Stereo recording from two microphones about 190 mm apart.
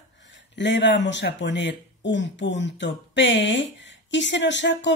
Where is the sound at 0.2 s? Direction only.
70° left (ahead or behind).